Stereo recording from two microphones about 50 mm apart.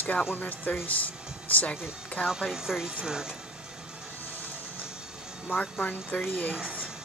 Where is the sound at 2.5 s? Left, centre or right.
Centre.